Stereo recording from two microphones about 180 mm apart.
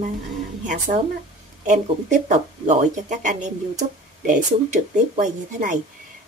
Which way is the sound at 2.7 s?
40° right (ahead or behind).